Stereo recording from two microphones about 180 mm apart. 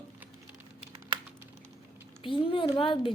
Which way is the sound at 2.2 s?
30° left (ahead or behind).